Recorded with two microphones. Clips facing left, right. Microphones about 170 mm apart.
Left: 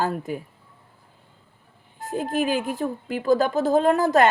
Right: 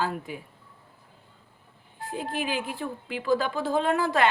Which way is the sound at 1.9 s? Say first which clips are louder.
Left 7 dB; 45° left (ahead or behind).